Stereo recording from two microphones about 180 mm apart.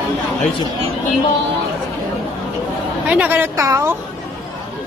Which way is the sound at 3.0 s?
10° right (ahead or behind).